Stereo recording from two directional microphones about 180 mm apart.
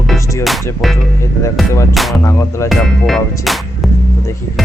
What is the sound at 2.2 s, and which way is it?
Music, 15° left (ahead or behind).